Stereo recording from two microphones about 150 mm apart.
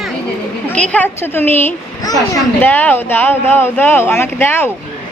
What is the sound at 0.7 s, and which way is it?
Speech, 10° left (ahead or behind).